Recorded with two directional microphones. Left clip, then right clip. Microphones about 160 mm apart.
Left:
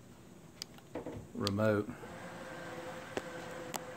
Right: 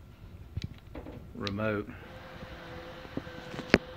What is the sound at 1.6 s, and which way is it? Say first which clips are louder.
Speech: left 1 dB; 10° left (ahead or behind).